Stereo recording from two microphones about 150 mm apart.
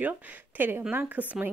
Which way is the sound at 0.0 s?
10° right (ahead or behind).